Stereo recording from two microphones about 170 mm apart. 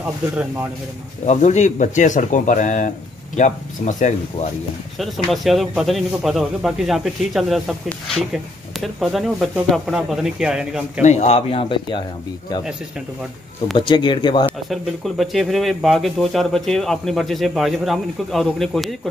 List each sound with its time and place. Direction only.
0.0 s speech: 10° right (ahead or behind)
1.2 s speech: 45° left (ahead or behind)
4.9 s speech: centre (ahead or behind)
11.0 s speech: 45° left (ahead or behind)
13.7 s speech: 30° left (ahead or behind)
14.7 s speech: centre (ahead or behind)